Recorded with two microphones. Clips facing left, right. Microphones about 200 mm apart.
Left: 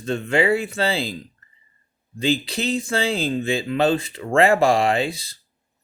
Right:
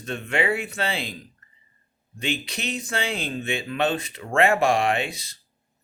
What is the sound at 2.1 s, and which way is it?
Speech, 30° left (ahead or behind).